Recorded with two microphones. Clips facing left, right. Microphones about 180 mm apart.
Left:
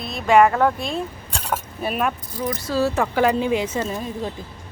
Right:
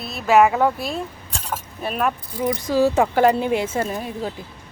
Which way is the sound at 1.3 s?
70° left (ahead or behind).